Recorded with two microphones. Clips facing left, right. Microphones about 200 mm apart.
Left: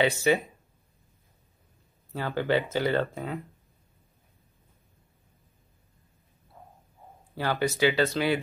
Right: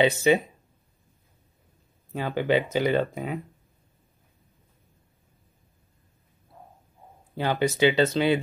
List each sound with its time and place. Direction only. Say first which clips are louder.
0.0 s speech: right 3 dB; 20° right (ahead or behind)
2.1 s speech: right 2 dB; 15° right (ahead or behind)
7.3 s speech: right 3 dB; 20° right (ahead or behind)